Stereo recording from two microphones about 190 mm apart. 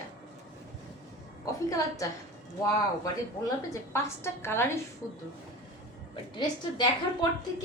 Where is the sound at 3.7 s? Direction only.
15° left (ahead or behind).